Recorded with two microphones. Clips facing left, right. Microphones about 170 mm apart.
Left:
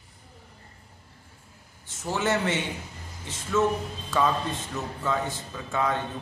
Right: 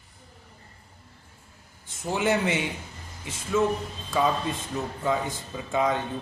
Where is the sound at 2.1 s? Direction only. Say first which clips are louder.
Right 1 dB; 15° right (ahead or behind).